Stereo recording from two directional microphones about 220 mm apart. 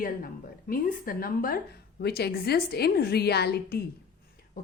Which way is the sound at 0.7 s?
40° left (ahead or behind).